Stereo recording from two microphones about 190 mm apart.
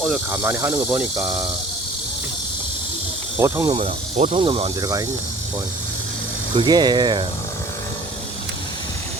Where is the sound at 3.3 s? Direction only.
10° right (ahead or behind).